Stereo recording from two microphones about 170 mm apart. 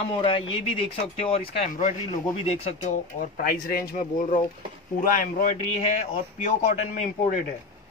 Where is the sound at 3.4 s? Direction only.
60° left (ahead or behind).